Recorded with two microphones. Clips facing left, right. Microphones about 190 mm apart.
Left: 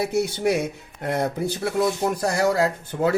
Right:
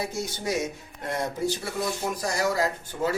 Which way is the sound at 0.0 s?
65° left (ahead or behind).